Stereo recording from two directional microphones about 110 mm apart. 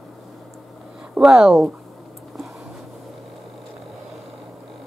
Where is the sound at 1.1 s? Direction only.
5° right (ahead or behind).